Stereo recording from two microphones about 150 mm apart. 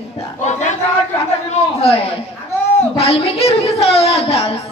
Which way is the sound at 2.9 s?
40° left (ahead or behind).